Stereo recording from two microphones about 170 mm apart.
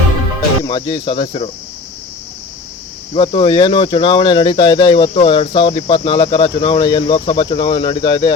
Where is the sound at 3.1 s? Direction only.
30° left (ahead or behind).